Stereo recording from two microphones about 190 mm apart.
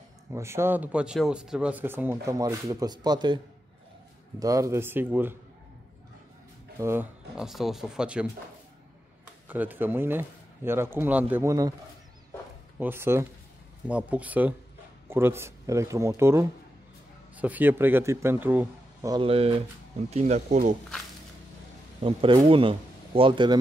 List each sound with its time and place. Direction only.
0.3 s speech: 15° right (ahead or behind)
4.4 s speech: 15° right (ahead or behind)
6.8 s speech: 15° right (ahead or behind)
7.3 s speech: centre (ahead or behind)
9.5 s speech: 10° right (ahead or behind)
12.7 s speech: 10° right (ahead or behind)
19.1 s speech: 30° right (ahead or behind)
22.0 s speech: 25° right (ahead or behind)